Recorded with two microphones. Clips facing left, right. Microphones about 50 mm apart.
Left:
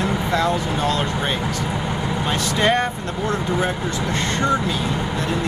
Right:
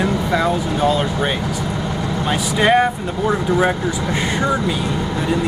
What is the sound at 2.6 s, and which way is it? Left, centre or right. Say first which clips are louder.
Speech: right 6 dB; centre.